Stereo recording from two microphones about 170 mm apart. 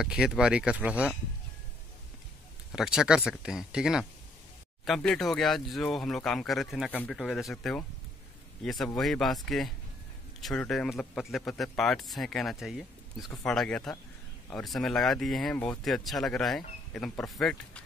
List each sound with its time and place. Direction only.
0.0 s speech: 5° right (ahead or behind)
2.7 s speech: 5° right (ahead or behind)
7.2 s speech: centre (ahead or behind)